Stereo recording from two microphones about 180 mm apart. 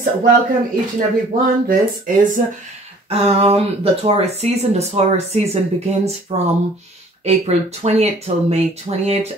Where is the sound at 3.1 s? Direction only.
35° right (ahead or behind).